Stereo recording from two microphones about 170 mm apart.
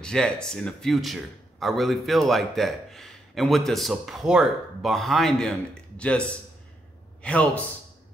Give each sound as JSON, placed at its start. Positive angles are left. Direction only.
{"t": 0.0, "sound": "a man's voice", "side_deg": 5}